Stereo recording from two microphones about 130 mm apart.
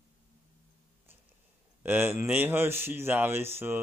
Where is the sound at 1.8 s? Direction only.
15° right (ahead or behind).